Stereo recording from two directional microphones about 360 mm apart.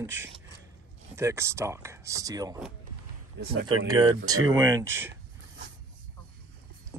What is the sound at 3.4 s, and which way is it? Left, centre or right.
Speech, right.